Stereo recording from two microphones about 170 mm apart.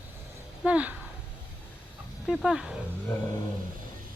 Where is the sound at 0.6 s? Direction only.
10° right (ahead or behind).